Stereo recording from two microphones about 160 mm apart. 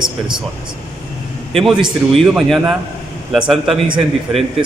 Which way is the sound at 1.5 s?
Centre (ahead or behind).